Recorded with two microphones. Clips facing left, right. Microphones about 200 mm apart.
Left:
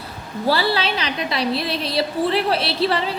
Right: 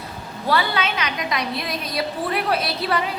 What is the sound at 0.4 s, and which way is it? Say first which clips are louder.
A woman's voice: left 2 dB; 30° left (ahead or behind).